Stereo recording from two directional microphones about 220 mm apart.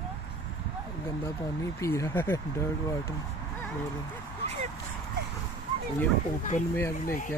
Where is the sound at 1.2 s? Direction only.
10° left (ahead or behind).